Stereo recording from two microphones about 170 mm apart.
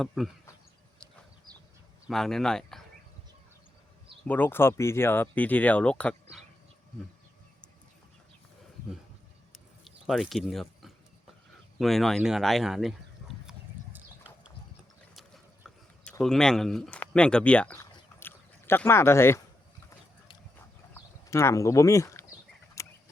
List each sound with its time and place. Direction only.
0.0 s speech: centre (ahead or behind)
2.0 s speech: centre (ahead or behind)
4.2 s speech: 10° left (ahead or behind)
9.5 s a sound: centre (ahead or behind)
11.8 s speech: centre (ahead or behind)
16.2 s speech: 5° left (ahead or behind)
18.2 s a sound: 10° left (ahead or behind)
20.9 s a sound: 15° left (ahead or behind)
22.8 s horse: 20° left (ahead or behind)